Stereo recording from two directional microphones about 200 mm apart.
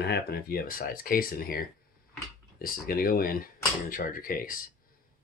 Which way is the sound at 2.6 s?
45° left (ahead or behind).